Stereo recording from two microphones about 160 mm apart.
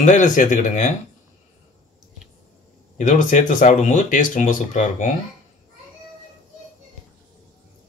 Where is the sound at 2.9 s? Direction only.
50° left (ahead or behind).